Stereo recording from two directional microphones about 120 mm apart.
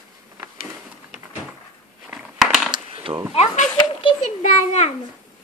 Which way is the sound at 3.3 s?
65° left (ahead or behind).